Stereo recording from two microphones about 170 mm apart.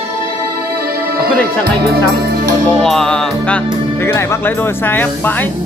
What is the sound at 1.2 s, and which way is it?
Speech, 70° right (ahead or behind).